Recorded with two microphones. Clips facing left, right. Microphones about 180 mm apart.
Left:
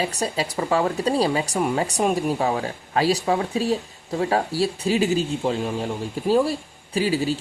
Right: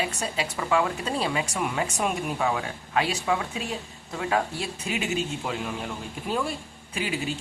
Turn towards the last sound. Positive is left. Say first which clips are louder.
# left 8 dB
turn(degrees=35)  # may be behind; listen again after turning